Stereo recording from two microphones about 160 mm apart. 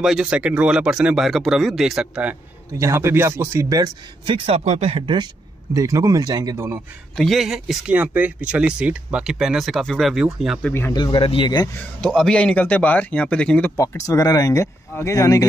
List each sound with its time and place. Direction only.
0.0 s speech: 5° right (ahead or behind)
2.8 s a man's voice: 15° right (ahead or behind)
4.5 s speech: 40° right (ahead or behind); by 6.8 s 15° right (ahead or behind)
7.2 s speech: centre (ahead or behind)
10.9 s speech: 30° left (ahead or behind)
12.0 s a man's voice: 5° left (ahead or behind)
13.7 s speech: 20° left (ahead or behind)